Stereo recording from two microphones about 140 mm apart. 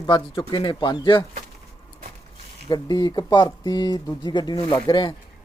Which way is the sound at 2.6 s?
30° left (ahead or behind).